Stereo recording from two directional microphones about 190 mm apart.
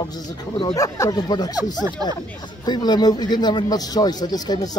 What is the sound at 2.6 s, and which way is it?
Speech, 20° left (ahead or behind).